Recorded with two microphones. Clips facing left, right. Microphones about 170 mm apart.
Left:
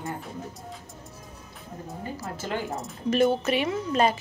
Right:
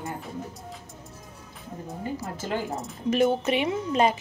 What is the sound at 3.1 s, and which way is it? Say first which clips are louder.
Speech: even; 20° right (ahead or behind).